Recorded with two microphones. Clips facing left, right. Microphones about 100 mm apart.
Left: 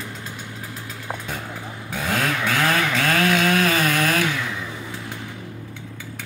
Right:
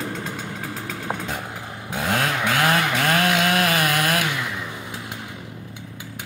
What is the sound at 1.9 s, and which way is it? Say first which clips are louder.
Chainsaw: right 1 dB; 20° right (ahead or behind).